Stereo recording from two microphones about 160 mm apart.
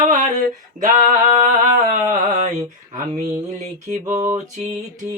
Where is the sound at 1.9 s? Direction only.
50° right (ahead or behind).